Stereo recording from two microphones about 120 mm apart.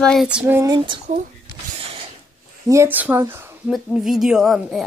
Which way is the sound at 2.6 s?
25° right (ahead or behind).